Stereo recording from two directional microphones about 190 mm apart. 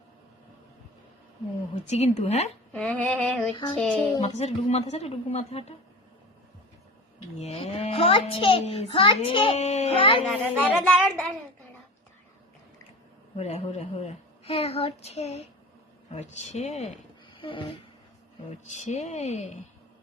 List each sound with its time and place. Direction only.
1.7 s a woman's voice: 35° left (ahead or behind)
2.7 s female singing: 5° left (ahead or behind)
3.5 s a child's voice: 25° left (ahead or behind)
3.8 s speech: 5° left (ahead or behind)
4.1 s a woman's voice: 35° left (ahead or behind)
7.3 s a child's voice: 35° left (ahead or behind)
10.2 s speech: 10° right (ahead or behind)
13.3 s a woman's voice: 35° left (ahead or behind)
18.7 s a woman's voice: 35° left (ahead or behind)